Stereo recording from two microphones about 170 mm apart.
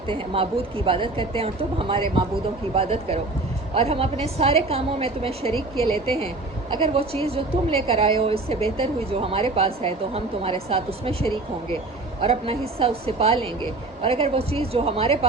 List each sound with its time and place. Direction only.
0.1 s a woman's voice: 30° right (ahead or behind)